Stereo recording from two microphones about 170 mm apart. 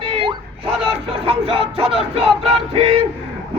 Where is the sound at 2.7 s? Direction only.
35° right (ahead or behind).